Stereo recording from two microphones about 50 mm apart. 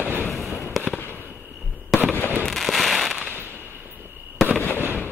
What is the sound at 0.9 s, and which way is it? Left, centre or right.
Fireworks, left.